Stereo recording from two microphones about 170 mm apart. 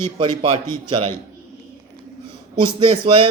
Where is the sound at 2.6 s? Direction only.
30° right (ahead or behind).